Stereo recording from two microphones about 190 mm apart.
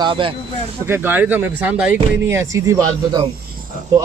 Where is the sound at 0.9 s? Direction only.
10° right (ahead or behind).